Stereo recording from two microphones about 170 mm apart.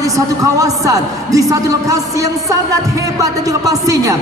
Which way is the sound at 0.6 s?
20° right (ahead or behind).